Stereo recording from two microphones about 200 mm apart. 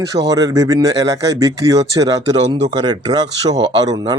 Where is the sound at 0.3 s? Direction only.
20° right (ahead or behind).